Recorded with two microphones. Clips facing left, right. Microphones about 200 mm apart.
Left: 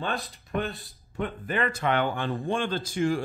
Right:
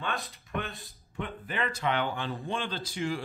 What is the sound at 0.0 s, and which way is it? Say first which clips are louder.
Speech: left 4 dB; 35° left (ahead or behind).